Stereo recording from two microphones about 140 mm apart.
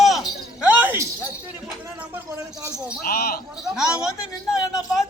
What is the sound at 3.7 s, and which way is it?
Speech, 5° right (ahead or behind).